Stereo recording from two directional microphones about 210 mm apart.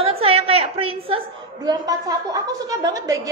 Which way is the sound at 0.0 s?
25° right (ahead or behind).